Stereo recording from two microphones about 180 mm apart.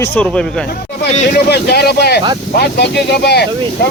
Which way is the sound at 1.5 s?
60° left (ahead or behind).